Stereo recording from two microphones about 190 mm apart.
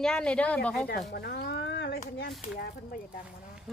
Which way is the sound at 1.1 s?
55° left (ahead or behind).